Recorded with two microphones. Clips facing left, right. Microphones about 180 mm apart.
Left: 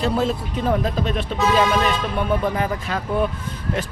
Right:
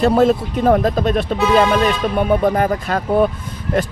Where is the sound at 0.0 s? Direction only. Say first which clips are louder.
Right 8 dB; 50° right (ahead or behind).